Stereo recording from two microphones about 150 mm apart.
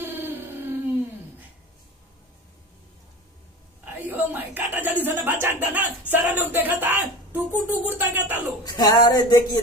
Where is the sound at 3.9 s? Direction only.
15° right (ahead or behind).